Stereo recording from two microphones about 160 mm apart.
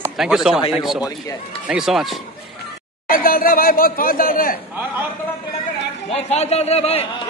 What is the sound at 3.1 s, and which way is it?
Speech, 65° left (ahead or behind).